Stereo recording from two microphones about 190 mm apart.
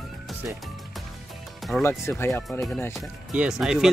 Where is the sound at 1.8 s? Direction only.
15° left (ahead or behind).